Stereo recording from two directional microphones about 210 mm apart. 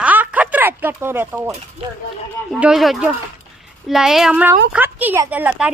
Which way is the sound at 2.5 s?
5° right (ahead or behind).